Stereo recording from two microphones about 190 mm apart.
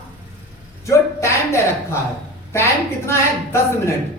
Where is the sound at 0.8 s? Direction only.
15° left (ahead or behind).